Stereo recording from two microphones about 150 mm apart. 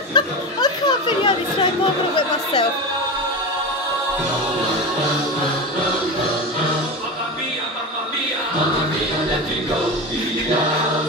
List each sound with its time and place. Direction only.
0.1 s chatter: 30° left (ahead or behind)